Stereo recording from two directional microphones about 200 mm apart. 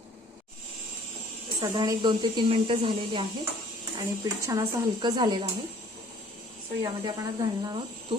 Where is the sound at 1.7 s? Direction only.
20° right (ahead or behind).